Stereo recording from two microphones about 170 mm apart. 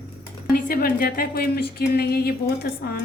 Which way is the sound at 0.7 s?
60° left (ahead or behind).